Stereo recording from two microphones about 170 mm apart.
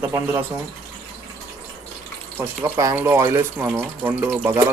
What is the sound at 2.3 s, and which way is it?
Speech, 15° right (ahead or behind).